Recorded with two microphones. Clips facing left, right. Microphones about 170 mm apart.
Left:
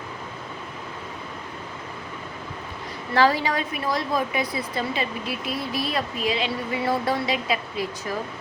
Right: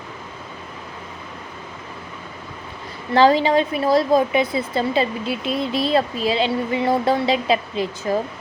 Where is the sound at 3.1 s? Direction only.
25° right (ahead or behind).